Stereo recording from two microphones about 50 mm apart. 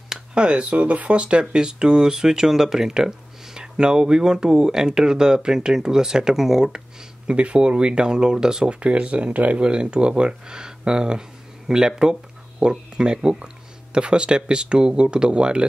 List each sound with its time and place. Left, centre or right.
0.3 s speech: right
7.2 s speech: right